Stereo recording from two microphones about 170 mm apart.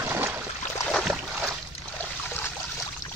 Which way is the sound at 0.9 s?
Centre (ahead or behind).